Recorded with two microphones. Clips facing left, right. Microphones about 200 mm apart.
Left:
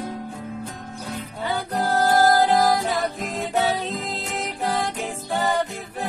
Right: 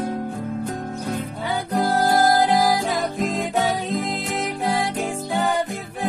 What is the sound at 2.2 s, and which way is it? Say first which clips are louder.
Music: even; 15° right (ahead or behind).